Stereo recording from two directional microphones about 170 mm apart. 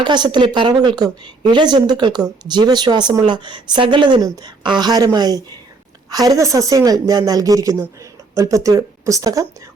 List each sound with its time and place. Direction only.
0.0 s speech: 25° right (ahead or behind)